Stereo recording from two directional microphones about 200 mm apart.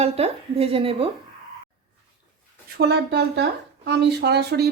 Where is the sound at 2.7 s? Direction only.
55° right (ahead or behind).